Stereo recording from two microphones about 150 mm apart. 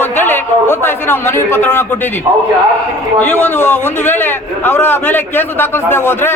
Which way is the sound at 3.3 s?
10° left (ahead or behind).